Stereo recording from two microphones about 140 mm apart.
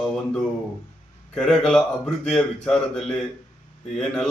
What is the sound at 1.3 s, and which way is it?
Speech, 5° left (ahead or behind).